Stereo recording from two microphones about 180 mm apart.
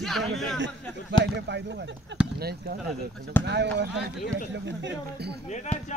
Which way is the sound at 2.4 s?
60° right (ahead or behind).